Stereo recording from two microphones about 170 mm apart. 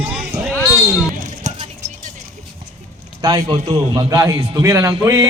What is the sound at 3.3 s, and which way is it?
A man's voice, 30° right (ahead or behind).